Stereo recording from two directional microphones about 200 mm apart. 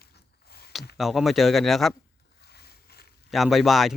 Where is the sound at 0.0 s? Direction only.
50° left (ahead or behind).